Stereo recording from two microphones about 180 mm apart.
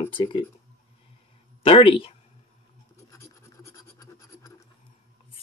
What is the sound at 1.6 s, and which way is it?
Speech, 30° left (ahead or behind).